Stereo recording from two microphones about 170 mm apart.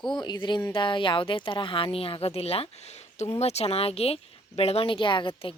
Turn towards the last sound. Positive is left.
turn(degrees=30)  # may be behind; listen again after turning